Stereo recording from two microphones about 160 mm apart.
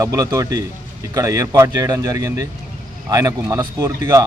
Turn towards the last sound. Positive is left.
turn(degrees=-20)  # may be behind; listen again after turning